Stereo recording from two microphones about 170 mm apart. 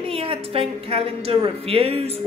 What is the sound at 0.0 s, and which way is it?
A woman's voice, 35° right (ahead or behind).